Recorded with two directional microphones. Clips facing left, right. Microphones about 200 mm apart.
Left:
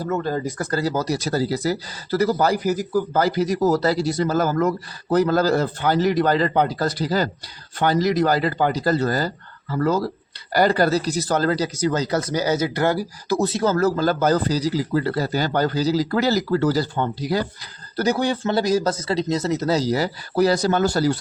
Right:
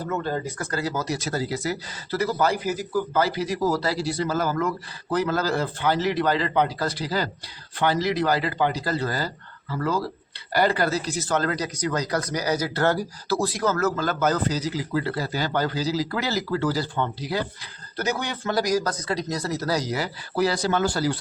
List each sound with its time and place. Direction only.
0.6 s speech: 35° left (ahead or behind)